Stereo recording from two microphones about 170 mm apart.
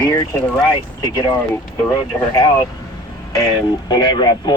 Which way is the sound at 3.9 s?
25° left (ahead or behind).